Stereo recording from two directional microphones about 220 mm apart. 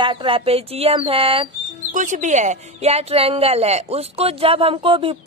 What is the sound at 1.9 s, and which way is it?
Speech, 35° right (ahead or behind).